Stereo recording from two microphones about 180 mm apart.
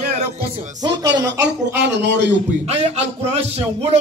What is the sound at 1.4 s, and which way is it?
Speech, 75° right (ahead or behind).